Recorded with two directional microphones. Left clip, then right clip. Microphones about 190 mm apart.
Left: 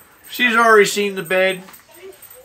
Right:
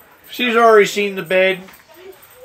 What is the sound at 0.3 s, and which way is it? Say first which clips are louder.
Speech: right 1 dB; 40° left (ahead or behind).